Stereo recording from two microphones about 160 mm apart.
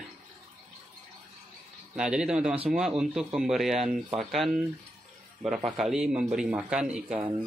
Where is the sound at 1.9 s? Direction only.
5° right (ahead or behind).